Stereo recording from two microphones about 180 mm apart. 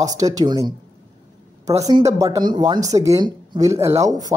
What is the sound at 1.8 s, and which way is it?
Speech, 20° right (ahead or behind).